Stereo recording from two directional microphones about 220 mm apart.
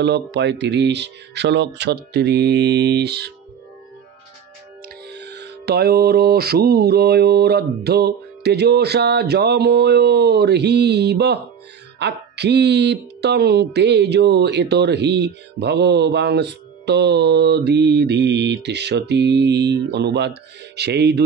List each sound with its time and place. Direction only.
0.0 s speech: 50° right (ahead or behind)
4.8 s speech: 50° right (ahead or behind)